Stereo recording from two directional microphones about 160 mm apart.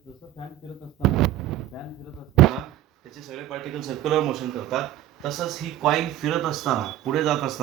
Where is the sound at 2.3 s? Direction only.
Centre (ahead or behind).